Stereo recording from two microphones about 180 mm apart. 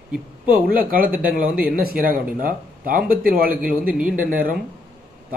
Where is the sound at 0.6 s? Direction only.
55° right (ahead or behind).